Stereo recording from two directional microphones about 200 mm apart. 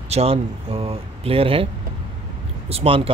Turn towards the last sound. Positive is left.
turn(degrees=-30)  # may be behind; listen again after turning